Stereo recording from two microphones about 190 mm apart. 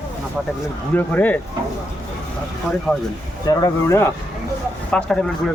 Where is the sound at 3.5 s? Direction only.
20° left (ahead or behind).